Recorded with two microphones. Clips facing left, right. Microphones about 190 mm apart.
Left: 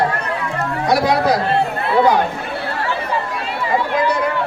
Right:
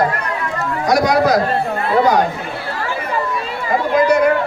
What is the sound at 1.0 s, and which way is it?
Speech, 30° left (ahead or behind).